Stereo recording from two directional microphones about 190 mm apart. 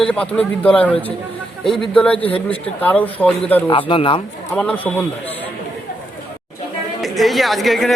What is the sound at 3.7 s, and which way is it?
Speech, 30° left (ahead or behind).